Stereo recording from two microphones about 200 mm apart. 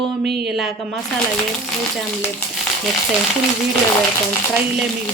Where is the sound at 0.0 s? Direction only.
Centre (ahead or behind).